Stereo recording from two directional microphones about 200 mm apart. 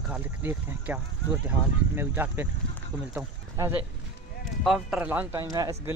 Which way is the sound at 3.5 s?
15° right (ahead or behind).